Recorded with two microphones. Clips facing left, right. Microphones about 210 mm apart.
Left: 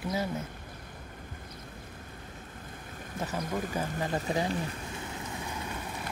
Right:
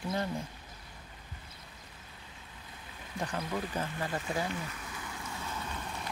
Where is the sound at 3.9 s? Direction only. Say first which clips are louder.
Left 4 dB; 40° left (ahead or behind).